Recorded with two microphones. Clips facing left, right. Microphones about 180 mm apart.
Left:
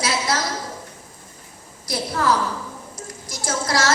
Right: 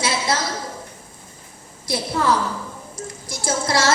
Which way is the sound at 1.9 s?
25° right (ahead or behind).